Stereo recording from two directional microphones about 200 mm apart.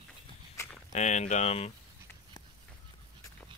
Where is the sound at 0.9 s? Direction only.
35° left (ahead or behind).